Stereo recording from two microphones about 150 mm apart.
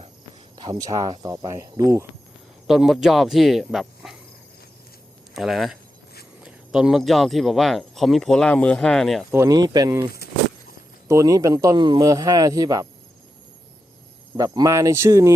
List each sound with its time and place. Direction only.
0.6 s speech: 25° right (ahead or behind)
2.6 s speech: centre (ahead or behind)
5.3 s speech: centre (ahead or behind)
9.3 s speech: 20° right (ahead or behind)
11.1 s speech: 25° right (ahead or behind)
14.3 s speech: 25° right (ahead or behind)